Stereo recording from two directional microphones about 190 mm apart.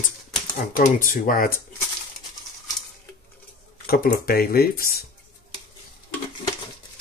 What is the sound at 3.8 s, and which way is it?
Speech, 50° left (ahead or behind).